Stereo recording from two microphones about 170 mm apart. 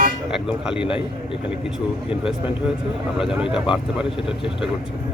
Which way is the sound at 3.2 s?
5° right (ahead or behind).